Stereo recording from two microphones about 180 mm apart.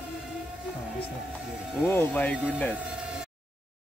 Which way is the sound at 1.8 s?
10° left (ahead or behind).